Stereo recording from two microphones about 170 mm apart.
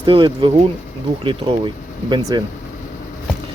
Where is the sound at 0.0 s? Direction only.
30° right (ahead or behind).